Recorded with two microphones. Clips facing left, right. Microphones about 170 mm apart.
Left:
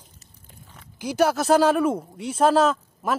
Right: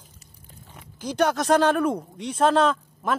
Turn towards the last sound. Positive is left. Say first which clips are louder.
# left 1 dB
turn(degrees=5)  # may be behind; listen again after turning